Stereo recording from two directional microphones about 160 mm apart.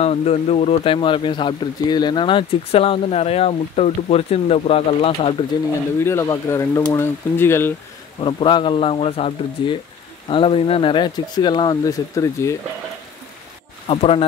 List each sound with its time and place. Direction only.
0.0 s speech: 40° left (ahead or behind)
5.9 s speech: 15° left (ahead or behind)
8.2 s speech: 30° left (ahead or behind)
13.8 s speech: 35° left (ahead or behind)